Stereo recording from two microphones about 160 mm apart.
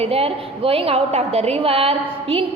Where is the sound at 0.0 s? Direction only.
40° right (ahead or behind).